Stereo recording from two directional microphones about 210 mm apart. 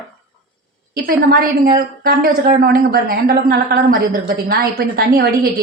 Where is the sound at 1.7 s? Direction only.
45° right (ahead or behind).